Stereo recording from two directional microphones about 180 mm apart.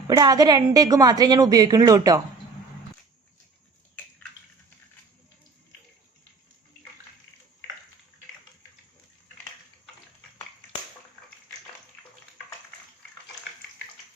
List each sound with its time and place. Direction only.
0.2 s a woman's voice: 20° right (ahead or behind)